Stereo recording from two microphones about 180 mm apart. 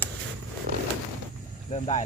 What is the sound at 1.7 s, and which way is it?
Speech, 40° left (ahead or behind).